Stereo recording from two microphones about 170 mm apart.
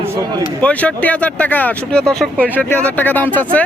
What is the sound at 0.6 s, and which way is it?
Speech, 10° left (ahead or behind).